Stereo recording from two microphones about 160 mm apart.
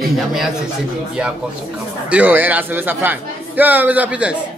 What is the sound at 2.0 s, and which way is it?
Speech, 10° right (ahead or behind).